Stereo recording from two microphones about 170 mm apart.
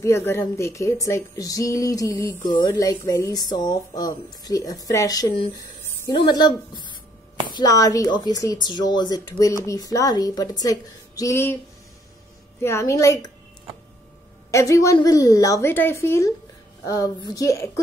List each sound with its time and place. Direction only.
0.0 s speech: 15° left (ahead or behind)
12.6 s speech: 15° left (ahead or behind)
14.5 s speech: 20° left (ahead or behind)